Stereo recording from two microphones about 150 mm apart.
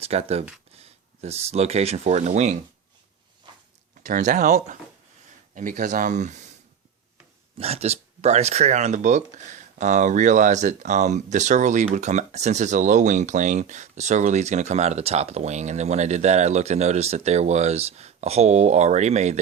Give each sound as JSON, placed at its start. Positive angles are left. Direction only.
{"t": 0.0, "sound": "speech", "side_deg": -45}
{"t": 4.0, "sound": "speech", "side_deg": -55}
{"t": 5.5, "sound": "speech", "side_deg": -60}
{"t": 7.6, "sound": "speech", "side_deg": -45}